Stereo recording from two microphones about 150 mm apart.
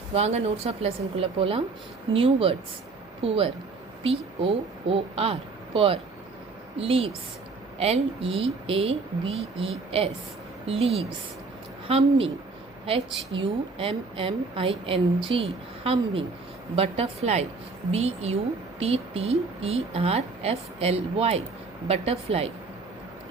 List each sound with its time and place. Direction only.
0.1 s a woman's voice: 45° right (ahead or behind)
13.3 s a woman's voice: 35° right (ahead or behind)